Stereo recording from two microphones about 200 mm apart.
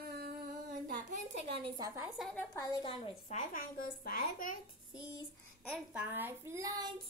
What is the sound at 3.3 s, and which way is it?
Speech, 45° left (ahead or behind).